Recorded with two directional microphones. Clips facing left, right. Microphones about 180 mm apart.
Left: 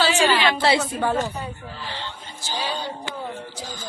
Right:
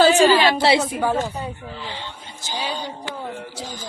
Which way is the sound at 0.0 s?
50° right (ahead or behind).